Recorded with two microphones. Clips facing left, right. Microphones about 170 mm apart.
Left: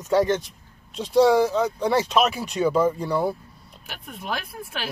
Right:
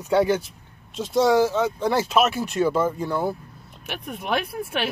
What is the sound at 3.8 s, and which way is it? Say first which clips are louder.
Speech: right 4 dB; 70° right (ahead or behind).